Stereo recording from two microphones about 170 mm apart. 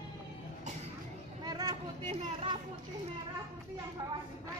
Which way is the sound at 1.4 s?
25° right (ahead or behind).